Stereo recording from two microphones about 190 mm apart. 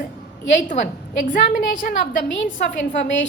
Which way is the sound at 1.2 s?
45° left (ahead or behind).